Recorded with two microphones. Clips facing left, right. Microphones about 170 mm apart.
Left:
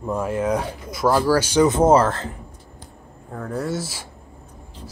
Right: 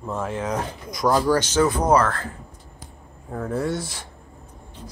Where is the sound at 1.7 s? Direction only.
25° left (ahead or behind).